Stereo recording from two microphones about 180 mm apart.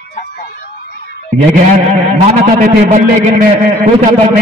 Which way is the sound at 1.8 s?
40° right (ahead or behind).